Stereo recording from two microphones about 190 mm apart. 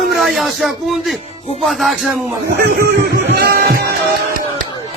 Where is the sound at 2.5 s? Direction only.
55° right (ahead or behind).